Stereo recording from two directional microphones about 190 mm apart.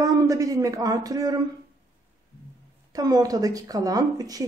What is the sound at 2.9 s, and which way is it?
Speech, 20° right (ahead or behind).